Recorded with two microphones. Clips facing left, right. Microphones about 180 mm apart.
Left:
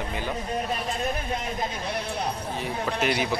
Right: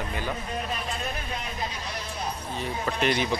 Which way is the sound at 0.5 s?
45° left (ahead or behind).